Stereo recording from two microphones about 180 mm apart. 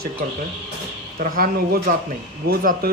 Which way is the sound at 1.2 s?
55° right (ahead or behind).